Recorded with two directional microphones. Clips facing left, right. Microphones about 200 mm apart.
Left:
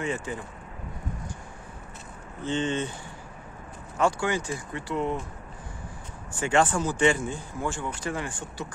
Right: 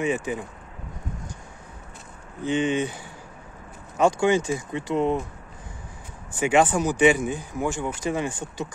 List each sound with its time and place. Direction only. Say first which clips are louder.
0.0 s speech: right 5 dB; 15° right (ahead or behind)
2.4 s speech: right 4 dB; 15° right (ahead or behind)
4.0 s speech: right 6 dB; 20° right (ahead or behind)
6.4 s speech: right 4 dB; 15° right (ahead or behind)